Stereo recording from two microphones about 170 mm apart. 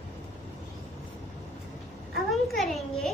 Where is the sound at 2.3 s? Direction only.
Centre (ahead or behind).